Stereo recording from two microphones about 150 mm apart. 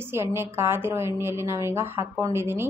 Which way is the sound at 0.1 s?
15° right (ahead or behind).